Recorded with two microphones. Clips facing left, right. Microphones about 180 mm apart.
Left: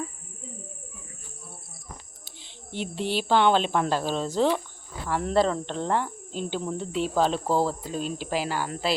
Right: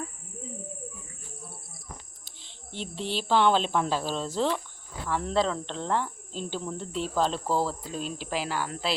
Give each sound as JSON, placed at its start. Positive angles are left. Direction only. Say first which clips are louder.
{"t": 2.2, "sound": "speech", "louder": "left 4 dB", "side_deg": 5}
{"t": 7.4, "sound": "speech", "louder": "left 3 dB", "side_deg": 25}
{"t": 7.7, "sound": "speech", "louder": "left 4 dB", "side_deg": 0}